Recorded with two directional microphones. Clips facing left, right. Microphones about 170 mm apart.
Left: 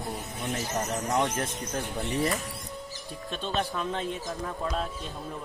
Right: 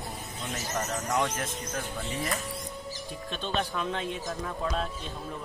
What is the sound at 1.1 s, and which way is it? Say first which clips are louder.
Speech: left 2 dB; 30° left (ahead or behind).